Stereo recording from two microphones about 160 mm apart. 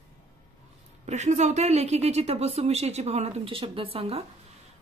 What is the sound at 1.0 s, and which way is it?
A woman's voice, 45° right (ahead or behind).